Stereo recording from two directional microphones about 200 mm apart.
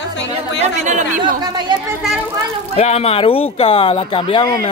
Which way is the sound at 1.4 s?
20° right (ahead or behind).